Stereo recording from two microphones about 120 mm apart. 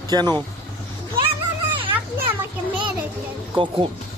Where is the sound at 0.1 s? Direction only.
35° right (ahead or behind).